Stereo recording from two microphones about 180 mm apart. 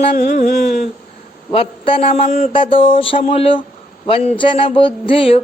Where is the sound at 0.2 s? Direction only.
45° left (ahead or behind).